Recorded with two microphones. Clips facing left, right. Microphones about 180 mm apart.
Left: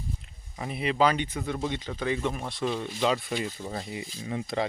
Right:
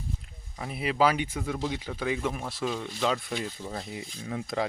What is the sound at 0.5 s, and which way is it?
Speech, centre (ahead or behind).